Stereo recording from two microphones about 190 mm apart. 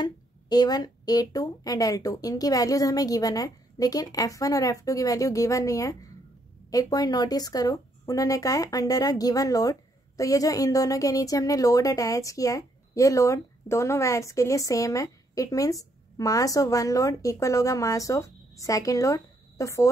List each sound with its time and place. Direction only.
0.0 s a woman's voice: 20° left (ahead or behind)